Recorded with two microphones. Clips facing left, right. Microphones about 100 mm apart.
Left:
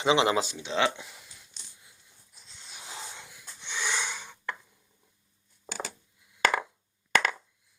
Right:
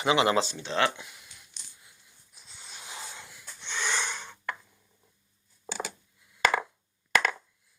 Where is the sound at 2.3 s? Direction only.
5° right (ahead or behind).